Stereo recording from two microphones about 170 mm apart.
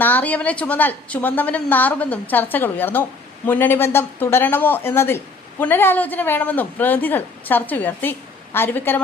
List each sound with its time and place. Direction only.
0.0 s speech: 10° left (ahead or behind)